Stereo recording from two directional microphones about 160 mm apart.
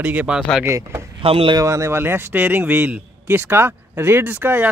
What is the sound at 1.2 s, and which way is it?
Speech, 35° right (ahead or behind).